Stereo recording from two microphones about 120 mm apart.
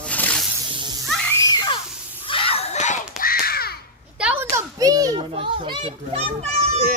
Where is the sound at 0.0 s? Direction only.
10° left (ahead or behind).